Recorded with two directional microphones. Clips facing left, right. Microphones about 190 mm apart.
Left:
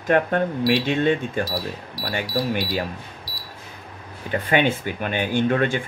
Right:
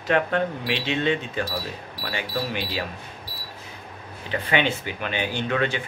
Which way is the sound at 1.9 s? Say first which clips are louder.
Left 4 dB; 40° left (ahead or behind).